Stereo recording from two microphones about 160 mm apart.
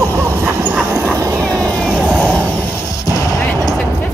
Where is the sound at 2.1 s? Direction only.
10° left (ahead or behind).